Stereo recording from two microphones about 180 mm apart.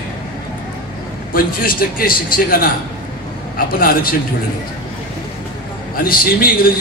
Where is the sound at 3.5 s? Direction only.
55° left (ahead or behind).